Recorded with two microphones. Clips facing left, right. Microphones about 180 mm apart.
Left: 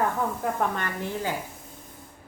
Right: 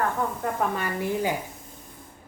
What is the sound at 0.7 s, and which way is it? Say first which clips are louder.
Speech: right 3 dB; 10° right (ahead or behind).